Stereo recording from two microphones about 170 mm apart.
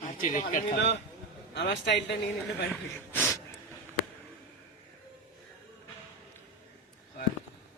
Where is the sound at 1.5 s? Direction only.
90° left.